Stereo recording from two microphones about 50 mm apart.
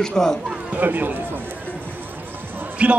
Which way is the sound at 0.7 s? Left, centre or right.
Right.